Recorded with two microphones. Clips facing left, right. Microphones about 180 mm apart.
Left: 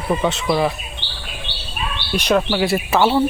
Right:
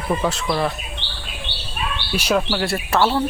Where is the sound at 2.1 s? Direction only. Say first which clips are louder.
Left 3 dB; 5° right (ahead or behind).